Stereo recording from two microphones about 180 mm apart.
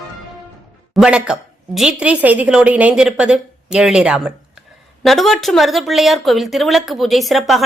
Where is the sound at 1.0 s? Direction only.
5° right (ahead or behind).